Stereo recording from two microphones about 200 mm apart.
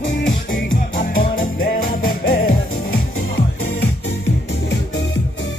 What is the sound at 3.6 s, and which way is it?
Music, 90° left.